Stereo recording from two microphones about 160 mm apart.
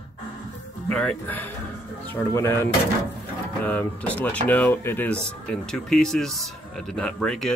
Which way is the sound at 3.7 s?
10° left (ahead or behind).